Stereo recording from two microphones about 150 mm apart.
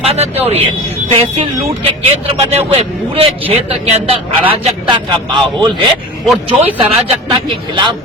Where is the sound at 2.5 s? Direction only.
40° right (ahead or behind).